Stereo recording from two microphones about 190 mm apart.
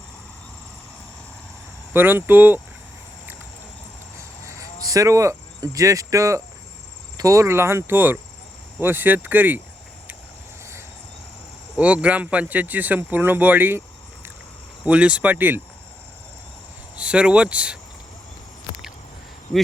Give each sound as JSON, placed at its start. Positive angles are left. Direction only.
{"t": 1.9, "sound": "speech", "side_deg": -10}
{"t": 4.4, "sound": "speech", "side_deg": -15}
{"t": 11.8, "sound": "speech", "side_deg": -5}
{"t": 14.8, "sound": "speech", "side_deg": -5}
{"t": 17.0, "sound": "speech", "side_deg": -5}